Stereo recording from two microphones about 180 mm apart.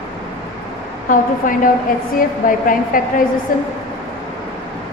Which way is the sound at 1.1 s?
50° left (ahead or behind).